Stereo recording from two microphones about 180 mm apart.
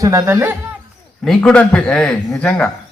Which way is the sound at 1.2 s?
5° left (ahead or behind).